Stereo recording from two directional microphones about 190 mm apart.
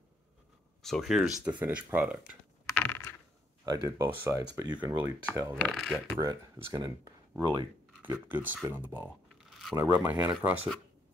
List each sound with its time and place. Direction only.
0.8 s speech: centre (ahead or behind)
2.7 s a sound: 10° left (ahead or behind)
3.6 s speech: 20° right (ahead or behind)
5.6 s speech: centre (ahead or behind)
6.1 s speech: 20° right (ahead or behind)
8.6 s a sound: 10° right (ahead or behind)
9.8 s speech: 10° right (ahead or behind)